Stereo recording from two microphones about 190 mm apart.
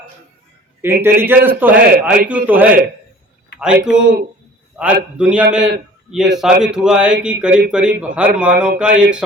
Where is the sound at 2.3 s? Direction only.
10° right (ahead or behind).